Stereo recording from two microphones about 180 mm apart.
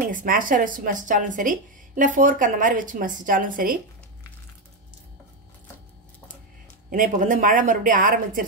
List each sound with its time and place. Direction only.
0.1 s speech: 50° right (ahead or behind)
6.9 s speech: 45° right (ahead or behind)